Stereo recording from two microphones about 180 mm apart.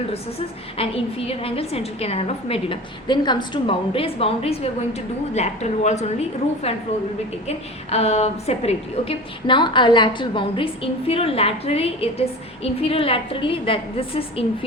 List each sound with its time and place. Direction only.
0.1 s a woman's voice: 30° left (ahead or behind)